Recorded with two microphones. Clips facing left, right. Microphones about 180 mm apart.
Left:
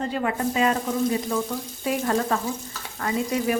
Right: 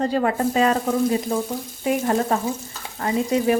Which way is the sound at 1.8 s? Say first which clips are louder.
Right 4 dB; 20° right (ahead or behind).